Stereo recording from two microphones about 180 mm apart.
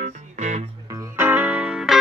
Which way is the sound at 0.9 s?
15° right (ahead or behind).